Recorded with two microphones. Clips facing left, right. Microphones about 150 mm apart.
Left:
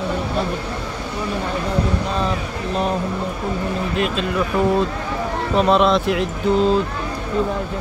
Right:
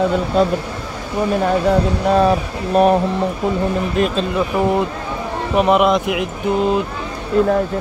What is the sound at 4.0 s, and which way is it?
Speech, 40° right (ahead or behind).